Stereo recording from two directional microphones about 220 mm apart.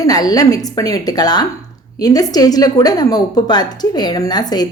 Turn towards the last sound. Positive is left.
turn(degrees=20)  # may be behind; listen again after turning